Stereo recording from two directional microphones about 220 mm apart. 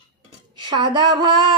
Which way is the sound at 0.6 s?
20° right (ahead or behind).